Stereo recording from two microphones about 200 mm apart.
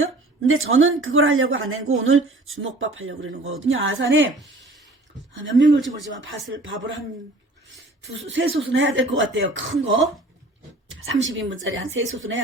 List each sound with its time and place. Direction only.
0.0 s speech: 90° right
5.3 s speech: 70° right (ahead or behind)
8.3 s a woman's voice: 70° right (ahead or behind)